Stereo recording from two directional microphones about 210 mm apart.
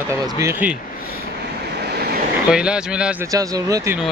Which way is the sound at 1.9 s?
50° right (ahead or behind).